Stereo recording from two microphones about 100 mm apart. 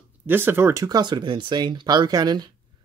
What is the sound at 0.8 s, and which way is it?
Speech, 45° right (ahead or behind).